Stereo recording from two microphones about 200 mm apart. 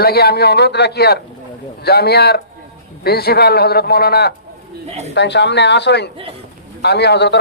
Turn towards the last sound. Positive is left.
turn(degrees=60)  # may be behind; listen again after turning